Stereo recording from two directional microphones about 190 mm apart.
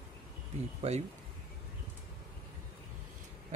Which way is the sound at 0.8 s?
35° right (ahead or behind).